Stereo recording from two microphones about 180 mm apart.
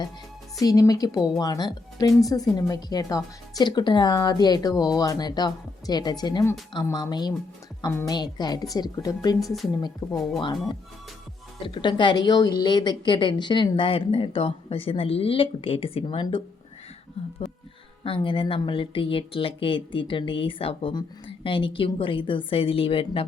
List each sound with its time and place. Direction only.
0.6 s a woman's voice: 20° left (ahead or behind)
9.4 s a woman's voice: centre (ahead or behind)
9.8 s a woman's voice: 20° left (ahead or behind)
11.6 s a woman's voice: 25° left (ahead or behind)